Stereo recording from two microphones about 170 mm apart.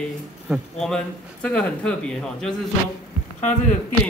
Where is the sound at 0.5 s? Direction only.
5° left (ahead or behind).